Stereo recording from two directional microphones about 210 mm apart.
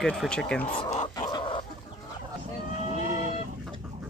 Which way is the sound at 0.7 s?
25° left (ahead or behind).